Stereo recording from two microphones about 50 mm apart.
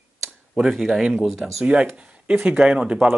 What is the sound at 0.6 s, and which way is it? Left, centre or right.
Speech, centre.